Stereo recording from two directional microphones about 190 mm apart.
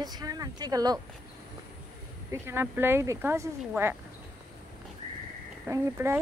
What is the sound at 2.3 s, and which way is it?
Speech, 10° right (ahead or behind).